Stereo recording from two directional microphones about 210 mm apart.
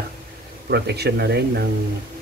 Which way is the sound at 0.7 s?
50° right (ahead or behind).